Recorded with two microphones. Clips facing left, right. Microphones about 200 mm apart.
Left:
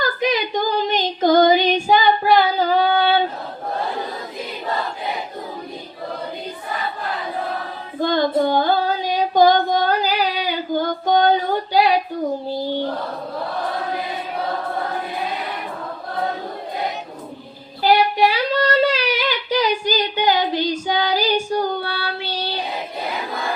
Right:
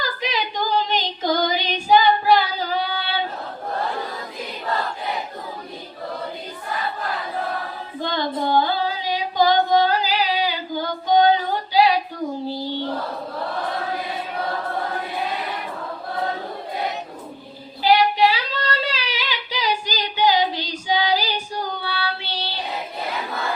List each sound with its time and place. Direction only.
0.8 s female singing: 50° left (ahead or behind)
8.0 s female singing: 50° left (ahead or behind)
17.8 s child singing: 50° left (ahead or behind)